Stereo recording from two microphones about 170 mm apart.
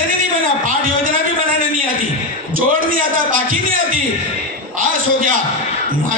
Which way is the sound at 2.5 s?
55° right (ahead or behind).